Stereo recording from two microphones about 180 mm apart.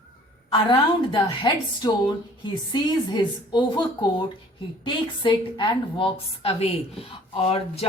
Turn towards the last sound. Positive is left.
turn(degrees=35)  # may be behind; listen again after turning